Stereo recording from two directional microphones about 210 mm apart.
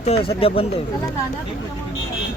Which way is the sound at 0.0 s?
30° left (ahead or behind).